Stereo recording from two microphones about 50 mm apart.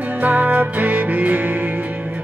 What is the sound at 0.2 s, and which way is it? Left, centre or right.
Music, right.